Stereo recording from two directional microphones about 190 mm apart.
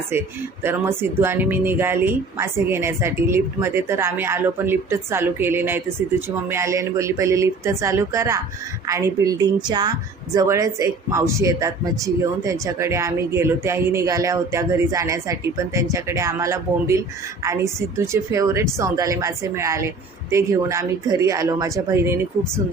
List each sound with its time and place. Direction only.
0.1 s a woman's voice: 10° right (ahead or behind)